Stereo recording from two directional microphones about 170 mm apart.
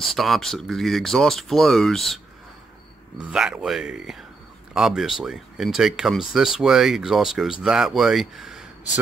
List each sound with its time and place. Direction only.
0.0 s speech: centre (ahead or behind)
3.2 s speech: 5° right (ahead or behind)